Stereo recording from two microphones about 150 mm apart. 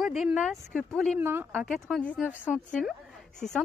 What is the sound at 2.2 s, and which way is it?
Speech, 10° right (ahead or behind).